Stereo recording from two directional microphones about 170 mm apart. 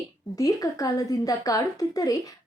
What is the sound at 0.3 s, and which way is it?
A woman's voice, 20° left (ahead or behind).